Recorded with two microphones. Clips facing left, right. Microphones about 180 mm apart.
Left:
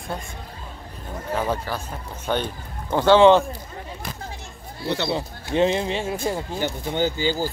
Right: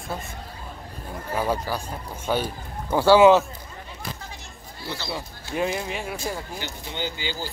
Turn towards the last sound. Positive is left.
turn(degrees=45)  # may be behind; listen again after turning